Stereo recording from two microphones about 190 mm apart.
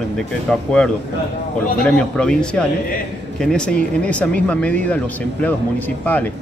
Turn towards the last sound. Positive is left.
turn(degrees=10)  # may be behind; listen again after turning